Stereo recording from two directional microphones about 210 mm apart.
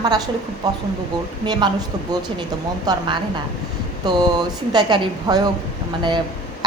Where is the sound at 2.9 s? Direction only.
20° right (ahead or behind).